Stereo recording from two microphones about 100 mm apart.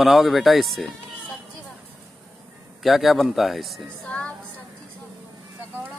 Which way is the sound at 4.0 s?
15° left (ahead or behind).